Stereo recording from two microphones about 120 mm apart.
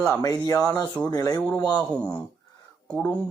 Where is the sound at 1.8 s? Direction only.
15° left (ahead or behind).